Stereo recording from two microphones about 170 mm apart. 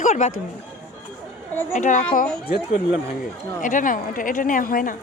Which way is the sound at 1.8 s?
45° left (ahead or behind).